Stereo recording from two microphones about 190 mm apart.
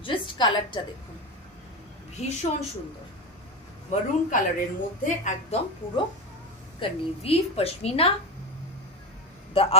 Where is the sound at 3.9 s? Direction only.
45° left (ahead or behind).